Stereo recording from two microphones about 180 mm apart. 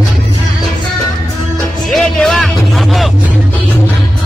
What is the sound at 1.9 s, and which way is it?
Music, centre (ahead or behind).